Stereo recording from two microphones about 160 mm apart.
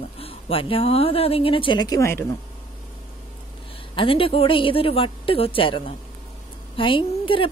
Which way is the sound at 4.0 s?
35° left (ahead or behind).